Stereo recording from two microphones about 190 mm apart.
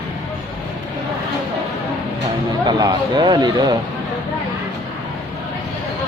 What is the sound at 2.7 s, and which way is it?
Speech, 20° right (ahead or behind).